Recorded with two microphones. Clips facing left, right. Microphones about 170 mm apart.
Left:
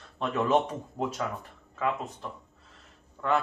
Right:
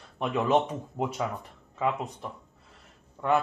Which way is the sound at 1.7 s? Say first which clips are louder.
Right 1 dB; 20° right (ahead or behind).